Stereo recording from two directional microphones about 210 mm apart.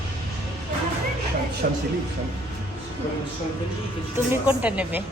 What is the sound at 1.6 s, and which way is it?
Speech, 45° right (ahead or behind).